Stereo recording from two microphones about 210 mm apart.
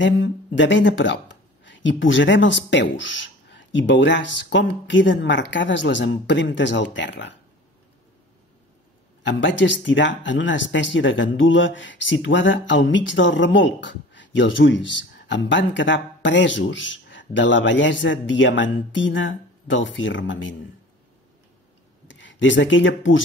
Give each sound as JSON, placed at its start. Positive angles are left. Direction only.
{"t": 0.0, "sound": "speech", "side_deg": 60}
{"t": 9.2, "sound": "speech", "side_deg": 60}
{"t": 22.0, "sound": "speech", "side_deg": 60}